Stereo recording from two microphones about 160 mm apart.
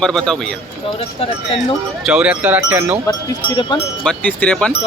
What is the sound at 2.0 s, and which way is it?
Speech, 5° right (ahead or behind).